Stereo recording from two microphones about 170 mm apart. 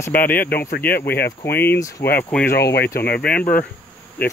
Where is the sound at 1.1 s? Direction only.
70° left (ahead or behind).